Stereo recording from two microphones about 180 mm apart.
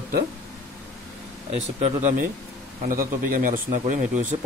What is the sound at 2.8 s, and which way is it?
Speech, 50° right (ahead or behind).